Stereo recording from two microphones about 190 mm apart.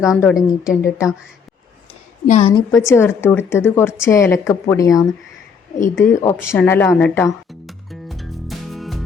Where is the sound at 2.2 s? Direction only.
40° left (ahead or behind).